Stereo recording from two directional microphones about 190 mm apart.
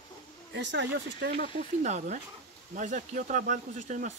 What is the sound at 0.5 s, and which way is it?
Speech, 70° right (ahead or behind).